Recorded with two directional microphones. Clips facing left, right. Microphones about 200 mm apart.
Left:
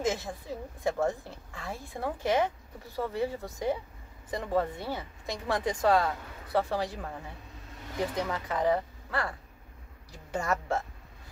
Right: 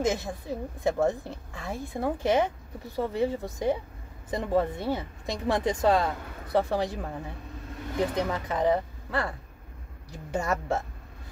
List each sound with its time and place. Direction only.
0.0 s speech: 20° right (ahead or behind)
8.1 s speech: 20° right (ahead or behind)
10.3 s speech: 20° right (ahead or behind)